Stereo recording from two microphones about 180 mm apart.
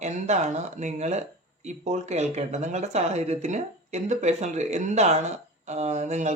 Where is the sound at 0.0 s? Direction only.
40° right (ahead or behind).